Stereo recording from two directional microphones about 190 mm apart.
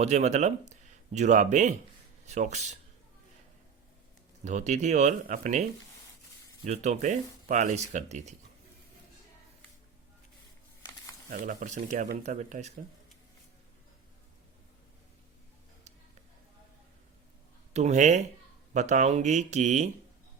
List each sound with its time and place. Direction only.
0.0 s speech: 35° right (ahead or behind)
4.4 s speech: 40° right (ahead or behind)
6.7 s speech: 35° right (ahead or behind)
11.3 s speech: 45° right (ahead or behind)
17.7 s speech: 35° right (ahead or behind)